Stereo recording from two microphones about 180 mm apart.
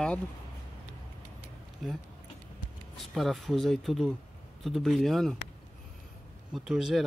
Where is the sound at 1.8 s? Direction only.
Centre (ahead or behind).